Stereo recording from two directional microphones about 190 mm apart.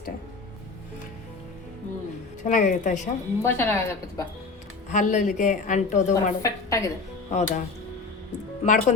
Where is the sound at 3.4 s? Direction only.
10° left (ahead or behind).